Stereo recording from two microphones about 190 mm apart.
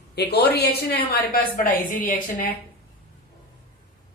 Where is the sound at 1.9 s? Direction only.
10° left (ahead or behind).